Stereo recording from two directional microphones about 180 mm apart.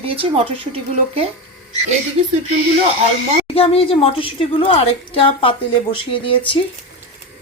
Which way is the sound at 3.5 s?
30° left (ahead or behind).